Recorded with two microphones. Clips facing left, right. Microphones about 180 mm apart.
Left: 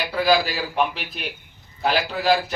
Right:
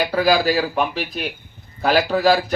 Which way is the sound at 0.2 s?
45° right (ahead or behind).